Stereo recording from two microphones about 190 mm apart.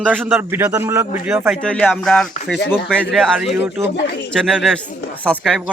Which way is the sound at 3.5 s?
10° right (ahead or behind).